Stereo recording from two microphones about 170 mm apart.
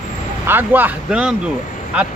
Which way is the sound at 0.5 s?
10° right (ahead or behind).